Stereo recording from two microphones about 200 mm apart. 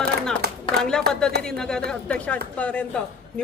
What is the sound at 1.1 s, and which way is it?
A woman's voice, 5° left (ahead or behind).